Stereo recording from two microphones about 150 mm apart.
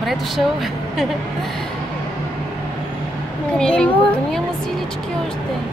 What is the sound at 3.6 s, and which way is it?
Speech, 5° left (ahead or behind).